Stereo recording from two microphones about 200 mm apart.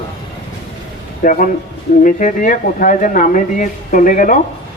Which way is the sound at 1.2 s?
40° left (ahead or behind).